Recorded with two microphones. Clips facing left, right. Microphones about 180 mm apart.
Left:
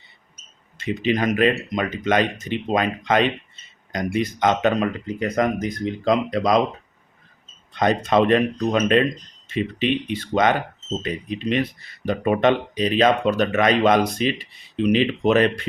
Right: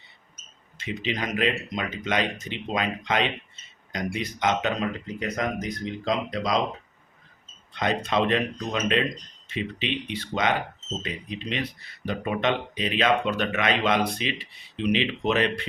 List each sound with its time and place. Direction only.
0.8 s speech: 50° left (ahead or behind)
7.7 s speech: 45° left (ahead or behind)